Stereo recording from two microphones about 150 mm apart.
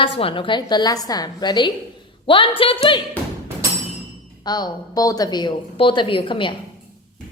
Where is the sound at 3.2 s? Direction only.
10° left (ahead or behind).